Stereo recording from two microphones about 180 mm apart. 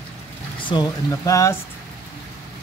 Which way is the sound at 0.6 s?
25° left (ahead or behind).